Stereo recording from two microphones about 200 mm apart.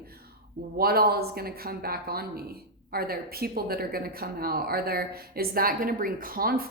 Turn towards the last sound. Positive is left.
turn(degrees=-45)  # may be behind; listen again after turning